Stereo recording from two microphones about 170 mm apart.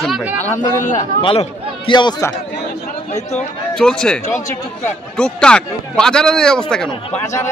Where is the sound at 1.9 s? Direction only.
25° left (ahead or behind).